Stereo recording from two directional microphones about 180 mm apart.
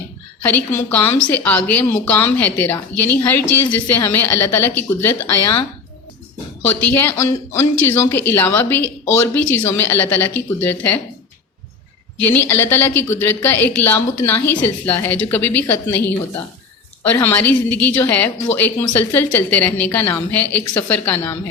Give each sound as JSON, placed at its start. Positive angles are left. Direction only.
{"t": 0.4, "sound": "a woman's voice", "side_deg": 10}
{"t": 6.7, "sound": "a woman's voice", "side_deg": 10}
{"t": 12.2, "sound": "a woman's voice", "side_deg": 10}